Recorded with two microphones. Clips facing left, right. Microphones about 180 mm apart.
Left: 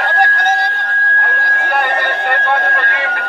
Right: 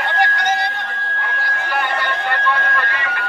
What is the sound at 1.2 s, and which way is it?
Music, 55° left (ahead or behind).